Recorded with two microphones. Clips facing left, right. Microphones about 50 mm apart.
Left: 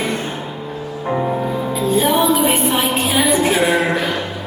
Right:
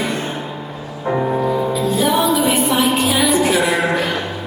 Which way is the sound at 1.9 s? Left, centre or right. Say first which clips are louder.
Left 2 dB; left.